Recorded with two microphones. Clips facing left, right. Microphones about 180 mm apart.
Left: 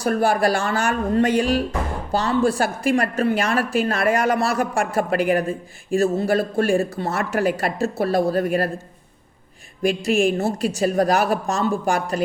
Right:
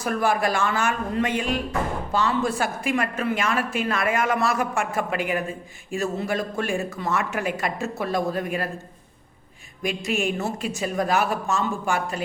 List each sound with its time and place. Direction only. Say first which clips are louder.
0.0 s a woman's voice: left 4 dB; 35° left (ahead or behind)
9.8 s a woman's voice: left 7 dB; 40° left (ahead or behind)